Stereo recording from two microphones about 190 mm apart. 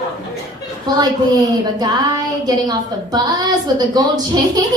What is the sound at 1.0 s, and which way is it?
Speech, 20° right (ahead or behind).